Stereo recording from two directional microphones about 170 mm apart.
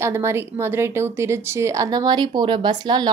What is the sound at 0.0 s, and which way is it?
A woman's voice, 15° right (ahead or behind).